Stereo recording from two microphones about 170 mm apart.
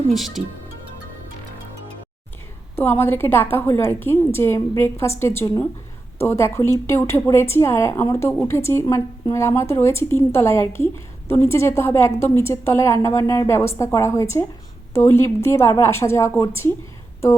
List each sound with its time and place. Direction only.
0.1 s speech: centre (ahead or behind)
2.7 s speech: 10° left (ahead or behind)